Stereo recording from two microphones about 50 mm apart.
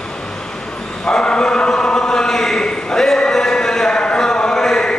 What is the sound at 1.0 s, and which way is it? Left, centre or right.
Chant, centre.